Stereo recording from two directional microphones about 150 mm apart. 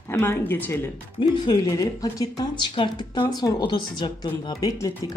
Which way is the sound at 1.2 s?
30° left (ahead or behind).